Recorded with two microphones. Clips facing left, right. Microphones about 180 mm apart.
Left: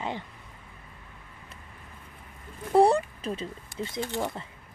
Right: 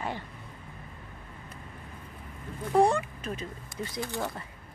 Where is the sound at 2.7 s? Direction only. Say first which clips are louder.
Left 3 dB; 35° left (ahead or behind).